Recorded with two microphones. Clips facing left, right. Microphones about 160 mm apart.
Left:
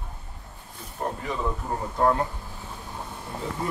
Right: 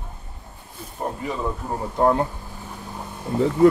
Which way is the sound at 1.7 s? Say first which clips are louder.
Right 4 dB; 20° right (ahead or behind).